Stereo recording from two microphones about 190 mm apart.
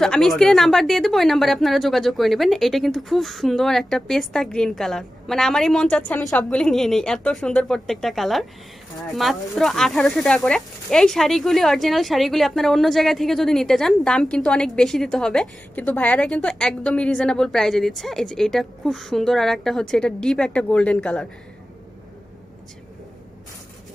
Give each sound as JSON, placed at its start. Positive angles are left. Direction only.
{"t": 0.0, "sound": "speech", "side_deg": 0}